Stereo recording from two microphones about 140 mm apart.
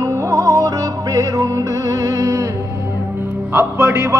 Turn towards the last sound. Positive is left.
turn(degrees=-15)  # may be behind; listen again after turning